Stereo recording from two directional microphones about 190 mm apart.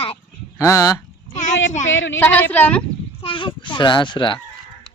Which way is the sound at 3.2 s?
25° left (ahead or behind).